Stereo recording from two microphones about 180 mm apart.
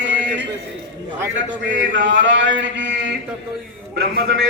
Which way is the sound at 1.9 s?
90° right.